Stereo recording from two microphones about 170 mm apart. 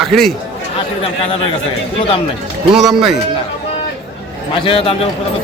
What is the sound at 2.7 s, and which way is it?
Speech, centre (ahead or behind).